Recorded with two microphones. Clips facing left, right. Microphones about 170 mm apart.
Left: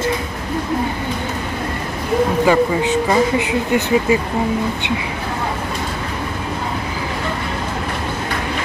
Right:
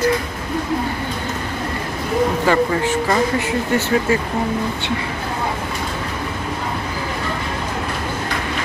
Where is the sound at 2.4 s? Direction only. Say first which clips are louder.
Left 2 dB; 15° left (ahead or behind).